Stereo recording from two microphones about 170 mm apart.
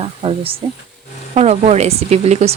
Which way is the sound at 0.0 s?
35° right (ahead or behind).